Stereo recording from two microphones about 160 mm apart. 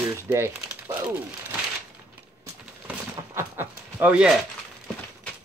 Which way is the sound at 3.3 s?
10° right (ahead or behind).